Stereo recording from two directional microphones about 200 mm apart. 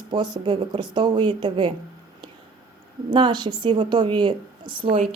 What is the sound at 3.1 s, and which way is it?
A woman's voice, 25° right (ahead or behind).